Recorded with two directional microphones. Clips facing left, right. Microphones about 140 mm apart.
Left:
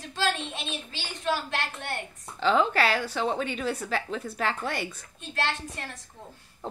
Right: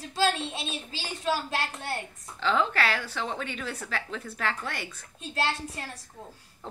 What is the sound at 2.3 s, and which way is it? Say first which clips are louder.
A woman's voice: left 3 dB; 15° left (ahead or behind).